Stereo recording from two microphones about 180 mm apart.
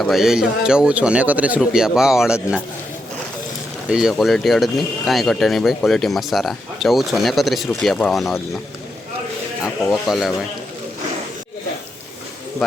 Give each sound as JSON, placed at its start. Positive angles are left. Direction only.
{"t": 0.0, "sound": "speech", "side_deg": 0}
{"t": 3.8, "sound": "speech", "side_deg": -5}
{"t": 9.8, "sound": "speech", "side_deg": 0}